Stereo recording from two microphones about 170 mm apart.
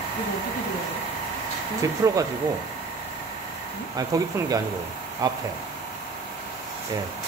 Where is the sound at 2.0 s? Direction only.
15° right (ahead or behind).